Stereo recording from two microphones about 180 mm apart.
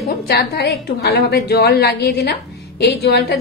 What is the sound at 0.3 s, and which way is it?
A woman's voice, 65° left (ahead or behind).